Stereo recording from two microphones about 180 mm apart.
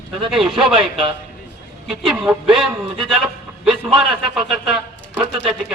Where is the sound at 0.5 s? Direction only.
30° right (ahead or behind).